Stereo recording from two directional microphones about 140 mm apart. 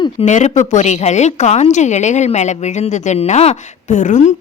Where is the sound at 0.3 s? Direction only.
55° left (ahead or behind).